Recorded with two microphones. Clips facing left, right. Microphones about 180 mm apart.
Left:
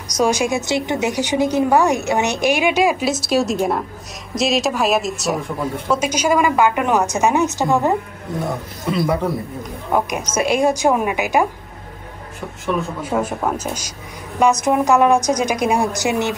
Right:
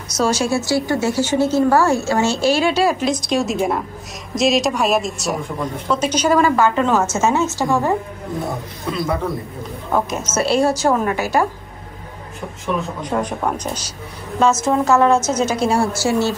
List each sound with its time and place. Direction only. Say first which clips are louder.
0.2 s a woman's voice: left 1 dB; 15° left (ahead or behind)
9.9 s a woman's voice: even; 15° left (ahead or behind)
13.0 s a woman's voice: even; 5° left (ahead or behind)